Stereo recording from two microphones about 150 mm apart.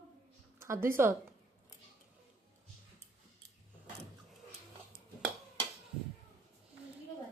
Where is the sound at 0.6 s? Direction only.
15° right (ahead or behind).